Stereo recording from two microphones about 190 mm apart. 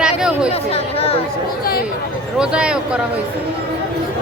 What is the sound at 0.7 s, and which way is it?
Speech, 30° left (ahead or behind).